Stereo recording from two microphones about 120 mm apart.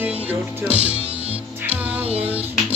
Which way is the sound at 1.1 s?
60° right (ahead or behind).